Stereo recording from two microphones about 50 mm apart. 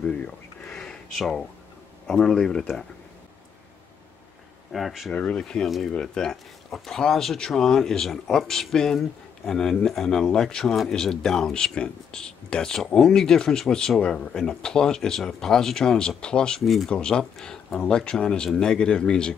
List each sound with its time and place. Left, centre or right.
0.0 s speech: left
1.1 s speech: centre
2.0 s speech: centre
4.7 s speech: centre
5.1 s speech: left
16.6 s speech: centre
16.9 s speech: centre